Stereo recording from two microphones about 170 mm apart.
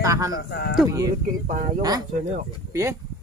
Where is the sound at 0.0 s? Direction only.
20° right (ahead or behind).